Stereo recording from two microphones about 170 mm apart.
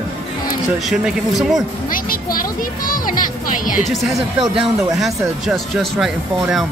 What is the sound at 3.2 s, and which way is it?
Speech, 50° left (ahead or behind).